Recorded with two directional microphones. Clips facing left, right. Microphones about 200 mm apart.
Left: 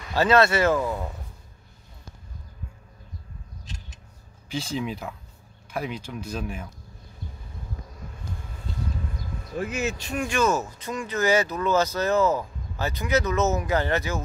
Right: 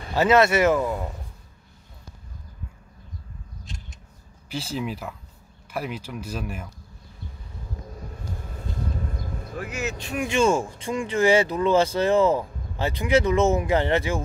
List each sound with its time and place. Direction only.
0.1 s speech: 20° right (ahead or behind)
0.7 s speech: 5° right (ahead or behind)
4.5 s speech: 5° right (ahead or behind)
9.6 s speech: 20° left (ahead or behind)
9.8 s speech: 20° right (ahead or behind)